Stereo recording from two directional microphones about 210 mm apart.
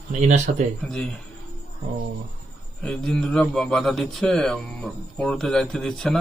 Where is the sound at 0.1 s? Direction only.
35° right (ahead or behind).